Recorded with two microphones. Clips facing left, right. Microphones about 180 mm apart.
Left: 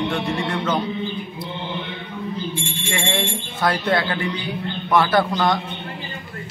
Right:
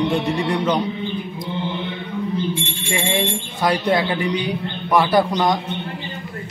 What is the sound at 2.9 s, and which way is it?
Speech, 15° right (ahead or behind).